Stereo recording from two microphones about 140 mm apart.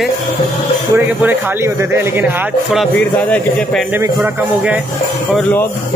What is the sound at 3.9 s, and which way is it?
Speech, 15° right (ahead or behind).